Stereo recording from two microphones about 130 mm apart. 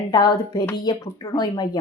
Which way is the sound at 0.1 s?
35° left (ahead or behind).